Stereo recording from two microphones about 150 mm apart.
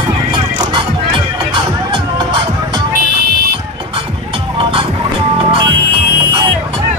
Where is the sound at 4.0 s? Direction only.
35° right (ahead or behind).